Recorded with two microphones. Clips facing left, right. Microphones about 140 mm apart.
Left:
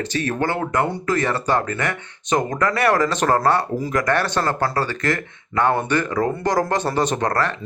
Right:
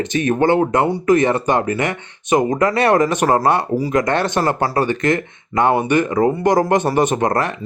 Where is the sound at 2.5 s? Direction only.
20° right (ahead or behind).